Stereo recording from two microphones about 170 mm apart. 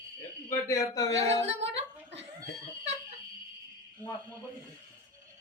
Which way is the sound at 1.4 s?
90° right.